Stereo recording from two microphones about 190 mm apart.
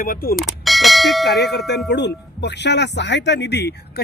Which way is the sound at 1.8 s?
65° left (ahead or behind).